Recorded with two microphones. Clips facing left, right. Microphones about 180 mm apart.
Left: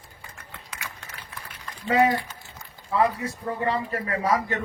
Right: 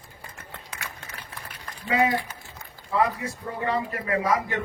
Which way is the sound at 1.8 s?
40° left (ahead or behind).